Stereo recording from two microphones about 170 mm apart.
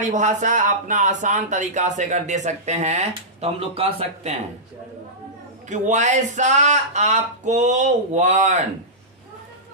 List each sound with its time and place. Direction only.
0.1 s speech: 45° right (ahead or behind)
5.6 s speech: 45° right (ahead or behind)